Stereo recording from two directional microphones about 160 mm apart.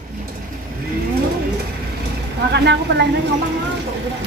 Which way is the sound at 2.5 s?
90° right.